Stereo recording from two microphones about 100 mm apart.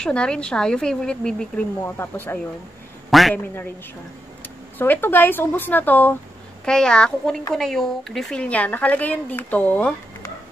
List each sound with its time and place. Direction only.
0.0 s speech: 10° left (ahead or behind)
1.8 s speech: 20° left (ahead or behind)
3.1 s a man's voice: centre (ahead or behind)
4.4 s speech: 20° left (ahead or behind)
6.6 s speech: 5° left (ahead or behind)